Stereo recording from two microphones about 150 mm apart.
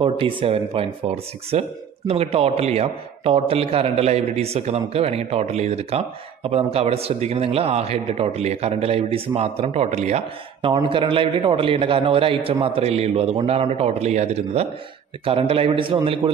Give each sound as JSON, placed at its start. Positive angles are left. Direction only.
{"t": 0.0, "sound": "a man's voice", "side_deg": -35}